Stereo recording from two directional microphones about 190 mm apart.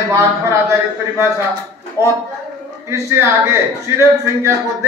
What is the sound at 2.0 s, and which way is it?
A man's voice, 15° right (ahead or behind).